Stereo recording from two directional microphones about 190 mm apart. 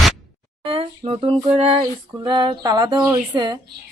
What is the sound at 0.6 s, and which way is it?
Speech, 30° right (ahead or behind).